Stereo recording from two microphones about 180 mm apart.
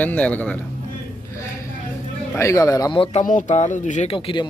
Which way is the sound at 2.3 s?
15° left (ahead or behind).